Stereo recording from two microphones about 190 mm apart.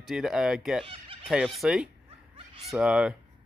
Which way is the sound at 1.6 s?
5° right (ahead or behind).